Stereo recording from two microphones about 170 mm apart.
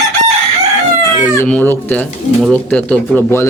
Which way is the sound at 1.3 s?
10° left (ahead or behind).